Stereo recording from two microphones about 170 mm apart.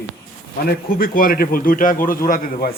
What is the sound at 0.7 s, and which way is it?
A man's voice, 60° left (ahead or behind).